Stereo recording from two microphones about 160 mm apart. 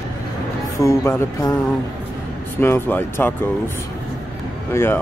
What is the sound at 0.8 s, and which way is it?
Speech, 15° left (ahead or behind).